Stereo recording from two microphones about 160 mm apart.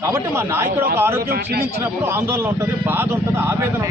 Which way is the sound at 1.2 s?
75° right (ahead or behind).